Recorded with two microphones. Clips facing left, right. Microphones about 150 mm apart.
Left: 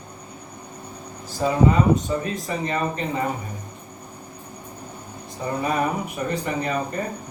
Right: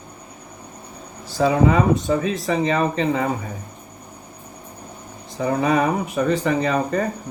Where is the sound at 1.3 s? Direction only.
85° right.